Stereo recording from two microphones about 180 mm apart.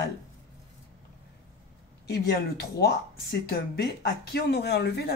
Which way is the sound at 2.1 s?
60° left (ahead or behind).